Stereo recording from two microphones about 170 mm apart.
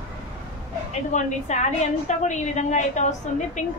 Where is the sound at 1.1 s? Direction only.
45° left (ahead or behind).